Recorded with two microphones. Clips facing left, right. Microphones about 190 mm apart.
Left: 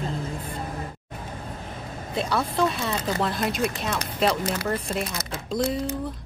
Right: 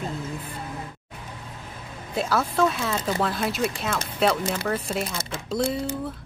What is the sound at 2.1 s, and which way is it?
Speech, 5° right (ahead or behind).